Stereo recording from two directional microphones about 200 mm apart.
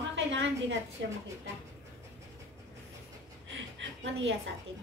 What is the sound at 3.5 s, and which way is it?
Chuckle, 65° right (ahead or behind).